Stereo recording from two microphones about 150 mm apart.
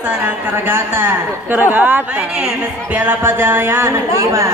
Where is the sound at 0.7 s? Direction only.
15° right (ahead or behind).